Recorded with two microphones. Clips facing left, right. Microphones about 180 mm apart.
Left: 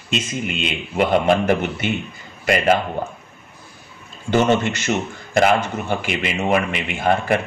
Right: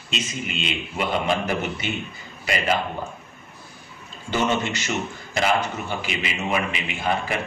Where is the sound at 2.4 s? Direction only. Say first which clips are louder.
Left 7 dB; 50° left (ahead or behind).